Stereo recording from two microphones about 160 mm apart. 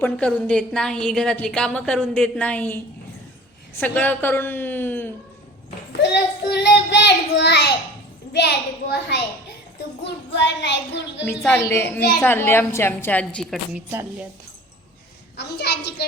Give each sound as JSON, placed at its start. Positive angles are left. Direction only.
{"t": 0.0, "sound": "a woman's voice", "side_deg": 5}
{"t": 3.8, "sound": "a woman's voice", "side_deg": 10}
{"t": 5.9, "sound": "a child's voice", "side_deg": 90}
{"t": 10.3, "sound": "a child's voice", "side_deg": 90}
{"t": 11.6, "sound": "a woman's voice", "side_deg": 15}
{"t": 13.7, "sound": "a woman's voice", "side_deg": -10}
{"t": 15.4, "sound": "a child's voice", "side_deg": 90}